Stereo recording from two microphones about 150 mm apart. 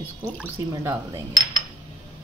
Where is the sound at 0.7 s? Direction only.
20° right (ahead or behind).